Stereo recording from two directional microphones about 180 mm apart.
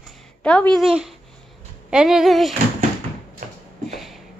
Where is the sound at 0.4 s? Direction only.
5° left (ahead or behind).